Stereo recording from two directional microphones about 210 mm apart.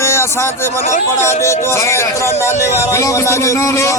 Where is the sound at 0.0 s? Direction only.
15° left (ahead or behind).